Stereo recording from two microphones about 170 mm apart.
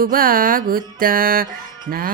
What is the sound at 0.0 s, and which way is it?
Music, 60° right (ahead or behind).